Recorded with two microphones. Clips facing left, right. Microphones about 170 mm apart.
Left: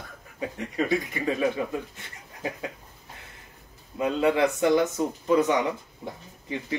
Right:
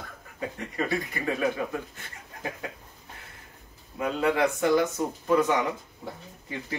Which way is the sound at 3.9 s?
20° left (ahead or behind).